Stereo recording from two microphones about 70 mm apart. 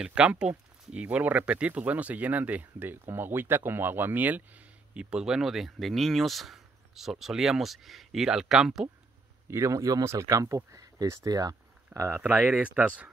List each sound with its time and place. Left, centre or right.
0.0 s speech: centre
9.5 s speech: right
11.9 s speech: right
12.2 s speech: right